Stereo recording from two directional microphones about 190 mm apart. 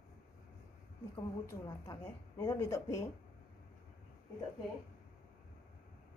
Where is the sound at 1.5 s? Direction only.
15° left (ahead or behind).